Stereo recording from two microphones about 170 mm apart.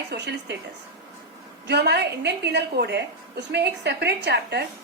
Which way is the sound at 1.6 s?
85° right.